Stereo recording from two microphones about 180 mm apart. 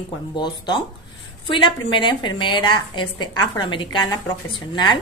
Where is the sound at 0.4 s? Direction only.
25° left (ahead or behind).